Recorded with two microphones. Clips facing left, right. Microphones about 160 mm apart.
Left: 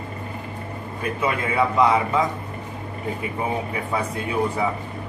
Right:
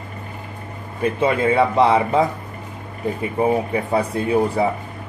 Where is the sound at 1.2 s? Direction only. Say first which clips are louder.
Right 5 dB; 30° right (ahead or behind).